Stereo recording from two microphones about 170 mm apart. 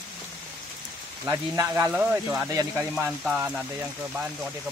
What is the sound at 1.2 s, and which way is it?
Speech, 20° right (ahead or behind).